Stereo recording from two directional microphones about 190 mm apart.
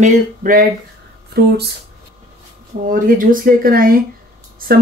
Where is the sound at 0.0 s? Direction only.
45° right (ahead or behind).